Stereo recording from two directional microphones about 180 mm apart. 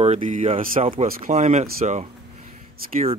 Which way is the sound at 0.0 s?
40° right (ahead or behind).